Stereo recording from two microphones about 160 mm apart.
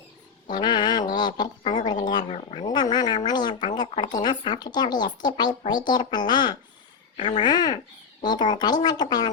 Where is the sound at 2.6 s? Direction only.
25° left (ahead or behind).